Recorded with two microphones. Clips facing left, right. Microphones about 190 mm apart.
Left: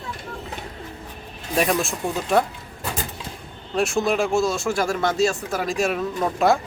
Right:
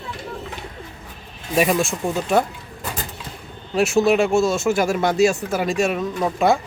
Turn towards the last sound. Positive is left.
turn(degrees=0)  # may be behind; listen again after turning